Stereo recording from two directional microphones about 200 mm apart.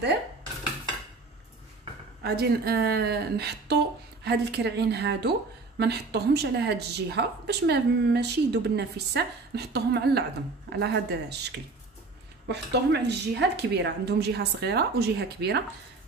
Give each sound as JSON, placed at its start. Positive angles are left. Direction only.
{"t": 2.2, "sound": "speech", "side_deg": -50}
{"t": 12.4, "sound": "speech", "side_deg": -55}